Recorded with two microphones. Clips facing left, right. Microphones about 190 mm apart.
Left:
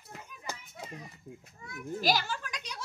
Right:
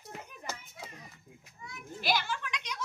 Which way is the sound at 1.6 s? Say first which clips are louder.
Left 7 dB; 40° left (ahead or behind).